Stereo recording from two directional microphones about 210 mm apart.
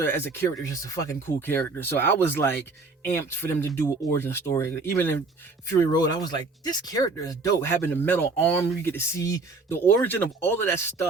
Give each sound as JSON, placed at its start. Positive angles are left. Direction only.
{"t": 0.0, "sound": "speech", "side_deg": 10}